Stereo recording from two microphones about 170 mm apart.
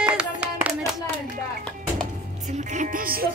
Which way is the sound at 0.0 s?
5° right (ahead or behind).